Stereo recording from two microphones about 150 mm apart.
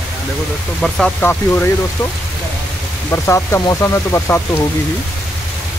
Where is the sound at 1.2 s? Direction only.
10° left (ahead or behind).